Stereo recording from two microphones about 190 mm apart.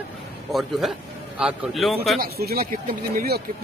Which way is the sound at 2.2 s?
55° right (ahead or behind).